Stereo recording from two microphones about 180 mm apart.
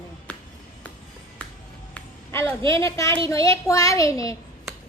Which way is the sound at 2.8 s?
15° left (ahead or behind).